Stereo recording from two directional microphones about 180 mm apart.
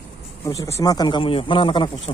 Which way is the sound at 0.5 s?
15° left (ahead or behind).